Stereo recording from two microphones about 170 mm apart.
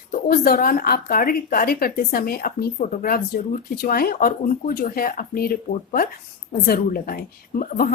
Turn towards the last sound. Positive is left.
turn(degrees=55)  # may be behind; listen again after turning